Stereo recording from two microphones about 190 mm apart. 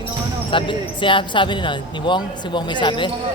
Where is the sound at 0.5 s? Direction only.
25° left (ahead or behind).